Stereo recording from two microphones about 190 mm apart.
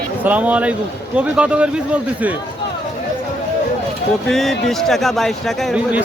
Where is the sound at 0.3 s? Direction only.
10° right (ahead or behind).